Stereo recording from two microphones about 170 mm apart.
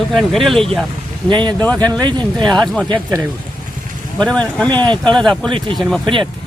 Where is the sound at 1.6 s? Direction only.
10° left (ahead or behind).